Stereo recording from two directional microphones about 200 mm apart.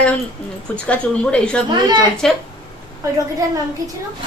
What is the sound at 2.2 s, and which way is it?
Speech, centre (ahead or behind).